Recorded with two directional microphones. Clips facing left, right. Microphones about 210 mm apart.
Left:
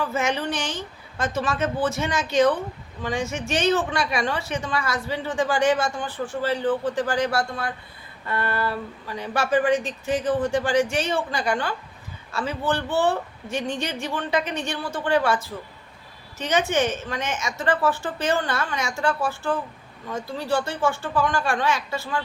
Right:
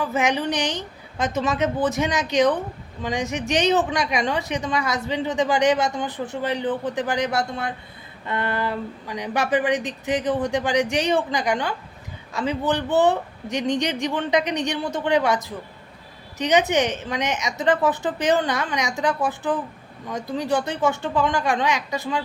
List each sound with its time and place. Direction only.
0.0 s speech: 15° right (ahead or behind)